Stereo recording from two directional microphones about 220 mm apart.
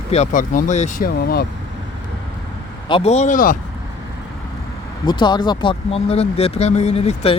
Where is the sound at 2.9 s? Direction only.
30° left (ahead or behind).